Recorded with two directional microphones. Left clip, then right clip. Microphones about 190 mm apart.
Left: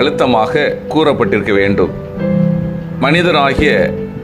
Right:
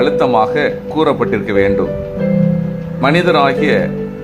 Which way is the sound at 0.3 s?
20° left (ahead or behind).